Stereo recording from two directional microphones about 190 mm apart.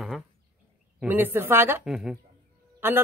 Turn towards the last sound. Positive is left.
turn(degrees=-10)  # may be behind; listen again after turning